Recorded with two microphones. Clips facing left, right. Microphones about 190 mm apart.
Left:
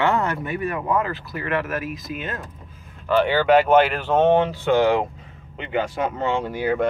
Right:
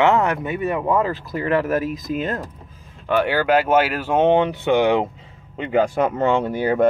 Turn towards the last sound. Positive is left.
turn(degrees=-45)  # may be behind; listen again after turning